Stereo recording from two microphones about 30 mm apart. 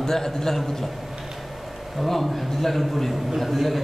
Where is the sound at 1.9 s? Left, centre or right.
Centre.